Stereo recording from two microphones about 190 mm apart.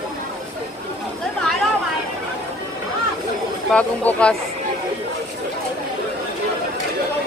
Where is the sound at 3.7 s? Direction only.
10° left (ahead or behind).